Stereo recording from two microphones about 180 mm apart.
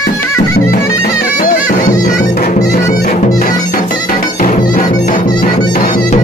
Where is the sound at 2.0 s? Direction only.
50° left (ahead or behind).